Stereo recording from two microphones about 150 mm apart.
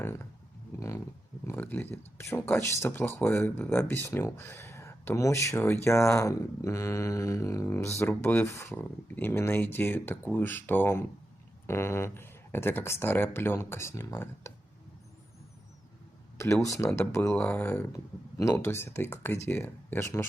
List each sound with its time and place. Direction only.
0.0 s speech: 15° left (ahead or behind)
16.4 s speech: 20° left (ahead or behind)